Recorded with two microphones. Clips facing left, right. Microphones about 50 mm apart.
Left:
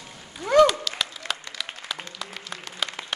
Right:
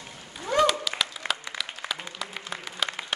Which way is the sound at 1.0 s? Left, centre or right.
Centre.